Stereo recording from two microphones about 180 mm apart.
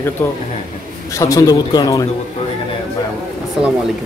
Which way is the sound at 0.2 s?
10° left (ahead or behind).